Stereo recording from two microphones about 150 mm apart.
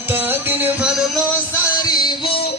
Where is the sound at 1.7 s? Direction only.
25° left (ahead or behind).